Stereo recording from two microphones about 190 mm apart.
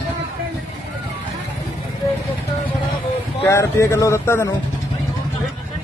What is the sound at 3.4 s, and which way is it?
Speech, 15° left (ahead or behind).